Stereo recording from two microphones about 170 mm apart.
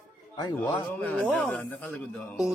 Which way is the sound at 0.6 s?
20° left (ahead or behind).